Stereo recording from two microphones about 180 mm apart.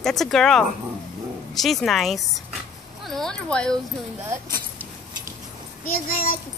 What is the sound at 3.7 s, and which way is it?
Speech, 15° right (ahead or behind).